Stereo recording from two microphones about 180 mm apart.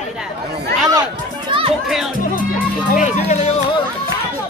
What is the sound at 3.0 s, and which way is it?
Speech, 40° left (ahead or behind).